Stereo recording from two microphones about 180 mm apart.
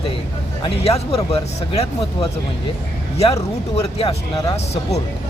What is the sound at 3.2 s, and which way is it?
Speech, 35° left (ahead or behind).